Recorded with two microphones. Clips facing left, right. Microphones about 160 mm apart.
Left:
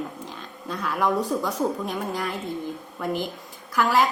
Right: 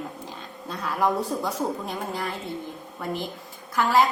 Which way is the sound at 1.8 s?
Centre (ahead or behind).